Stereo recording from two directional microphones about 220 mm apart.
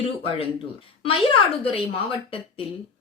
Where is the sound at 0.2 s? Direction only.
25° left (ahead or behind).